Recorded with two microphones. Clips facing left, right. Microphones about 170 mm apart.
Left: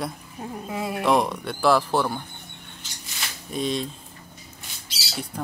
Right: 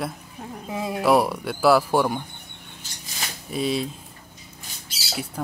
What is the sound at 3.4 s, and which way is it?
Speech, 5° right (ahead or behind).